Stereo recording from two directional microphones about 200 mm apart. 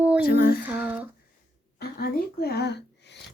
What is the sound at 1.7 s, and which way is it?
Speech, 50° left (ahead or behind).